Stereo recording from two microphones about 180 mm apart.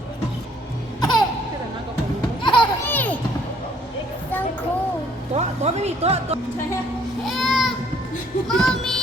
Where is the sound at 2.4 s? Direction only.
25° left (ahead or behind).